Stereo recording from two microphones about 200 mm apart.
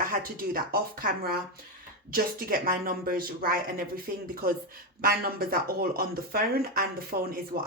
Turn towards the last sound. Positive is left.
turn(degrees=-45)  # may be behind; listen again after turning